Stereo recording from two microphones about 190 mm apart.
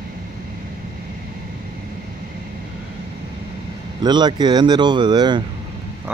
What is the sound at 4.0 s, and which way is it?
Speech, 20° right (ahead or behind).